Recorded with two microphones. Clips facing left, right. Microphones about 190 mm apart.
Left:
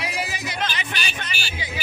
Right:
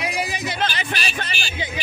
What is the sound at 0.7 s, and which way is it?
Speech, 35° right (ahead or behind).